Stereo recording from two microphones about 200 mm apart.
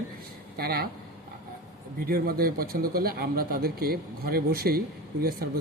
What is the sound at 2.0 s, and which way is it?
A man's voice, 50° right (ahead or behind).